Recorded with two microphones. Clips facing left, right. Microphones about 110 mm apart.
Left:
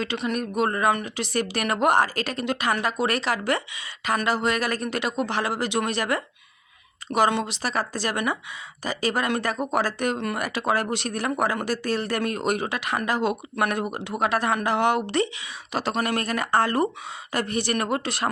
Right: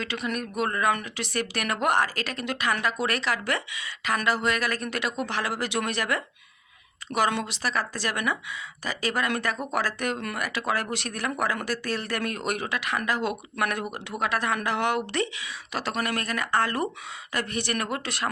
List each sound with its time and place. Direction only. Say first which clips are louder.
0.0 s a woman's voice: left 4 dB; 30° left (ahead or behind)